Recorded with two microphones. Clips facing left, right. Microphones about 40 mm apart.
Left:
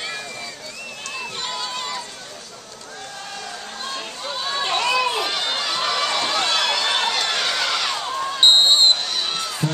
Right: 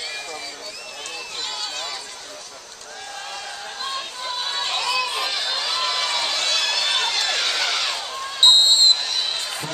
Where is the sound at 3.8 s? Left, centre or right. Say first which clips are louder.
Right 1 dB; centre.